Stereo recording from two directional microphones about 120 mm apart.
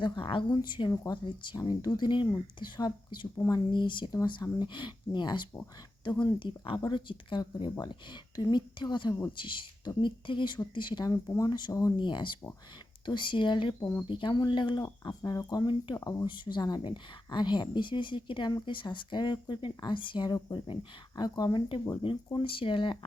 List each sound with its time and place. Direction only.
0.0 s speech: 45° left (ahead or behind)
3.3 s speech: 25° left (ahead or behind)
3.7 s speech: 40° left (ahead or behind)
11.9 s speech: 40° left (ahead or behind)